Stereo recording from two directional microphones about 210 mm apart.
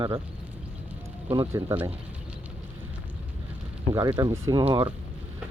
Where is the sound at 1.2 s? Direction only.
20° right (ahead or behind).